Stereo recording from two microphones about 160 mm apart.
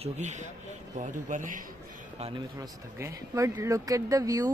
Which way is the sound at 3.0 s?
20° right (ahead or behind).